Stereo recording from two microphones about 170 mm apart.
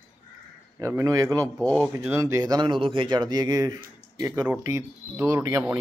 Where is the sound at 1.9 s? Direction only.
15° right (ahead or behind).